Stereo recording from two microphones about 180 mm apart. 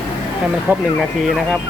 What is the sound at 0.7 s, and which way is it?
Speech, 10° right (ahead or behind).